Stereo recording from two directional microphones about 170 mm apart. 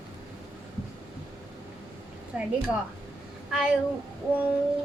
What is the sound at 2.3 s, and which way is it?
Speech, 5° right (ahead or behind).